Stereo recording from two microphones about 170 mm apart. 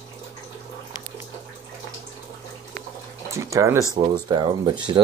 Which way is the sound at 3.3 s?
20° right (ahead or behind).